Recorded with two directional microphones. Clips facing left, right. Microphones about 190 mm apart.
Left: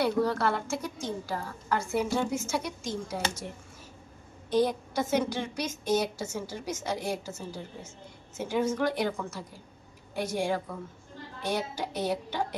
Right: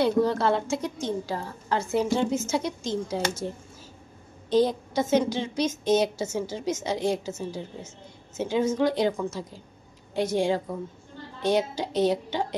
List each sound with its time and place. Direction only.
0.0 s a woman's voice: 20° right (ahead or behind)